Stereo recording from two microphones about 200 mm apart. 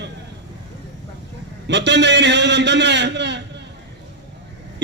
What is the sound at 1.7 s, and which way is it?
A man's voice, 60° right (ahead or behind).